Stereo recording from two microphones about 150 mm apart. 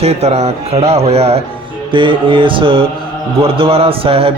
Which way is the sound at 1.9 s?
35° right (ahead or behind).